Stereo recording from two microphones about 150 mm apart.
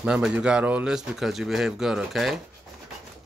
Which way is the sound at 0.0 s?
5° right (ahead or behind).